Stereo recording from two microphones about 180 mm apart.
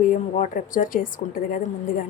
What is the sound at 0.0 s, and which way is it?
A woman's voice, 45° left (ahead or behind).